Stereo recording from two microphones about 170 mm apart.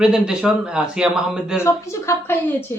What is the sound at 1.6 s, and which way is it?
Speech, 15° left (ahead or behind).